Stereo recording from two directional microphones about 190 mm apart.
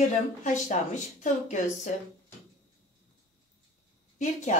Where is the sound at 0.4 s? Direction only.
40° left (ahead or behind).